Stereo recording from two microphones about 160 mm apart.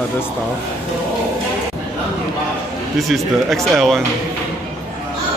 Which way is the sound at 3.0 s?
Centre (ahead or behind).